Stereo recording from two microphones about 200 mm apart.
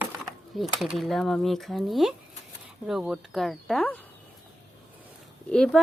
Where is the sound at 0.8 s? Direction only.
Centre (ahead or behind).